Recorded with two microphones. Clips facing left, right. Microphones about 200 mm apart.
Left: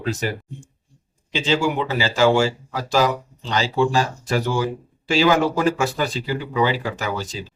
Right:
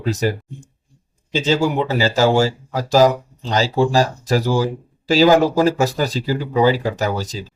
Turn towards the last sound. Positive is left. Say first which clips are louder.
# right 5 dB
turn(degrees=-40)  # may be behind; listen again after turning